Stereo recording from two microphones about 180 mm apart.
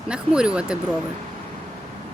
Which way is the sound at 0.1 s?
5° right (ahead or behind).